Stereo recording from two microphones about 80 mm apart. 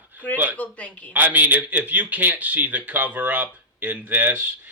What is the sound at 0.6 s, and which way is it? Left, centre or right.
Speech, centre.